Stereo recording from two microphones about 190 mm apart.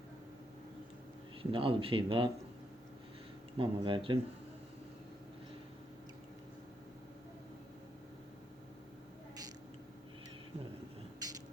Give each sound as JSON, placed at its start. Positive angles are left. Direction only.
{"t": 1.4, "sound": "speech", "side_deg": -30}
{"t": 3.6, "sound": "speech", "side_deg": -25}
{"t": 11.2, "sound": "a sound", "side_deg": -20}